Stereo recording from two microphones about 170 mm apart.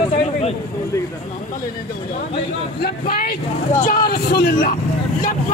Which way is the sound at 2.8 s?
65° left (ahead or behind).